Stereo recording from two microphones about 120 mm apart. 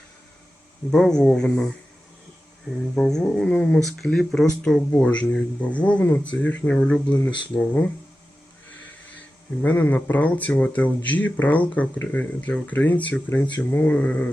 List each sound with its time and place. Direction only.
0.9 s speech: 5° left (ahead or behind)
2.9 s speech: 5° left (ahead or behind)
9.6 s speech: 15° left (ahead or behind)